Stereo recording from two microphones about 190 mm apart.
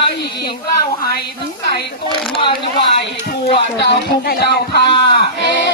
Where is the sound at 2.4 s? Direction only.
25° left (ahead or behind).